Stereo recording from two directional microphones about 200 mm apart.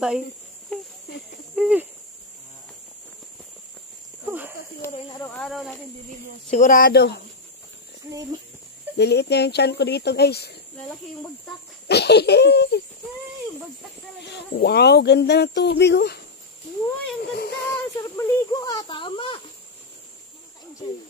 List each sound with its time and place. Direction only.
0.7 s speech: 5° left (ahead or behind)
1.5 s a sound: 5° right (ahead or behind)
4.3 s a sound: 10° right (ahead or behind)
4.9 s speech: 20° left (ahead or behind)
5.3 s speech: centre (ahead or behind)
6.5 s speech: 40° left (ahead or behind)
8.9 s speech: 55° left (ahead or behind)
11.9 s speech: 55° left (ahead or behind)
14.2 s speech: 55° left (ahead or behind)
17.2 s child singing: 55° left (ahead or behind)
17.9 s speech: 15° left (ahead or behind)